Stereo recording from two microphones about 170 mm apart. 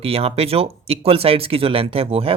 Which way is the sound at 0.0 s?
35° right (ahead or behind).